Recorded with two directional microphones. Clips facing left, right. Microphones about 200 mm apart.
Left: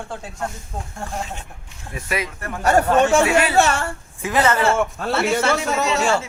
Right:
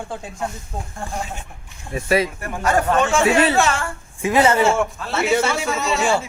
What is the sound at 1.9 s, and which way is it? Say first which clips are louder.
Speech: right 7 dB; 30° right (ahead or behind).